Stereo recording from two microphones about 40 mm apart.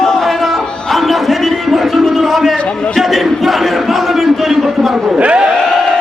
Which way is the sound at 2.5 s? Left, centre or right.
Left.